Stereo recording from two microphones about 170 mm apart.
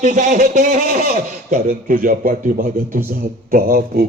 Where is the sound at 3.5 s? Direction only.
60° right (ahead or behind).